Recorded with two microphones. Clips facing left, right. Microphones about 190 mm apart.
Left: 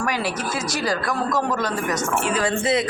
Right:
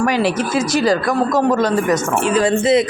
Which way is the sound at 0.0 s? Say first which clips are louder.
Right 8 dB; 25° right (ahead or behind).